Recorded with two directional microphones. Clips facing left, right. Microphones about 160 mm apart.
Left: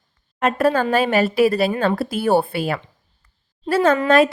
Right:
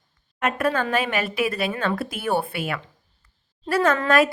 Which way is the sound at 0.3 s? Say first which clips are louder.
Left 5 dB; 30° left (ahead or behind).